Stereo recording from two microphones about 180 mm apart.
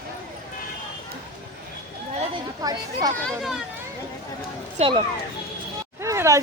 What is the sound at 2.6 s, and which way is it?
Speech, 20° right (ahead or behind).